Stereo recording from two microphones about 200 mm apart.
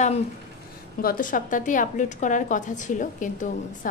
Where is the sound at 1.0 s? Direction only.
45° left (ahead or behind).